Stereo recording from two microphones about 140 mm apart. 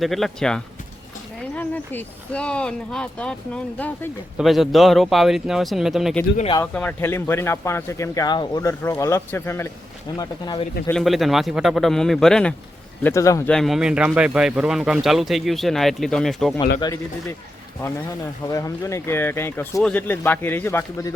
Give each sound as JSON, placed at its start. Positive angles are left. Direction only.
{"t": 0.0, "sound": "speech", "side_deg": 0}
{"t": 4.4, "sound": "speech", "side_deg": 0}
{"t": 6.7, "sound": "speech", "side_deg": 15}
{"t": 8.8, "sound": "speech", "side_deg": 20}
{"t": 10.2, "sound": "speech", "side_deg": 30}
{"t": 10.9, "sound": "speech", "side_deg": 0}
{"t": 13.0, "sound": "speech", "side_deg": 20}
{"t": 13.5, "sound": "speech", "side_deg": 0}
{"t": 18.4, "sound": "speech", "side_deg": 25}